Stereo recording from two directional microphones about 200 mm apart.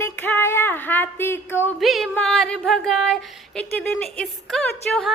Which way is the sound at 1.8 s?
Centre (ahead or behind).